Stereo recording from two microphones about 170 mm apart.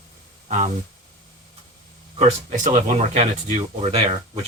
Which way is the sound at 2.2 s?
45° right (ahead or behind).